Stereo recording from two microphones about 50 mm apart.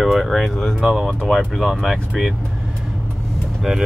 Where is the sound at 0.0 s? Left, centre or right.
Centre.